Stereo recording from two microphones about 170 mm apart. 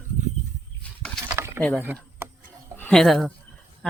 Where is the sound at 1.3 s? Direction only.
15° right (ahead or behind).